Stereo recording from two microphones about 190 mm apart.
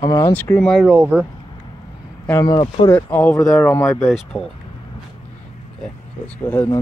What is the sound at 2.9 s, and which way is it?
Speech, 10° left (ahead or behind).